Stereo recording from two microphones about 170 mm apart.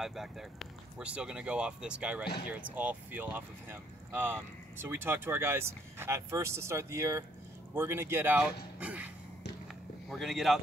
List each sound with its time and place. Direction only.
0.0 s speech: centre (ahead or behind)